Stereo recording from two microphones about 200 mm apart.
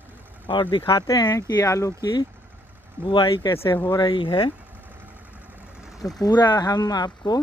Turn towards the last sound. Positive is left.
turn(degrees=20)  # may be behind; listen again after turning